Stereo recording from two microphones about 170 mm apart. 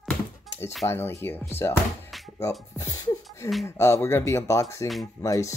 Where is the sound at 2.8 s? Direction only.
15° left (ahead or behind).